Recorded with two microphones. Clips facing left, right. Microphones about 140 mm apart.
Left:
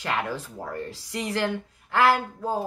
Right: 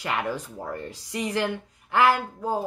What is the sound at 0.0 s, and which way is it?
Speech, 15° right (ahead or behind).